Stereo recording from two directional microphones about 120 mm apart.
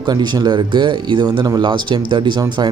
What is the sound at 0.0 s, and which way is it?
Speech, 35° right (ahead or behind).